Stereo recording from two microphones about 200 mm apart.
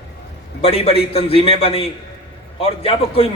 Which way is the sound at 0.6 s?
30° left (ahead or behind).